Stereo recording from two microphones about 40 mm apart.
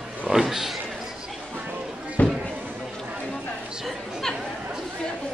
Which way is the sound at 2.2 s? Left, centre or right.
Left.